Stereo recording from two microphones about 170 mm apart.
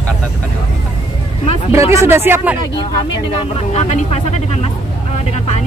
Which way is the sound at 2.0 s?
15° right (ahead or behind).